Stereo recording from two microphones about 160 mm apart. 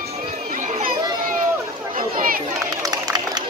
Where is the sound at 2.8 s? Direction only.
25° right (ahead or behind).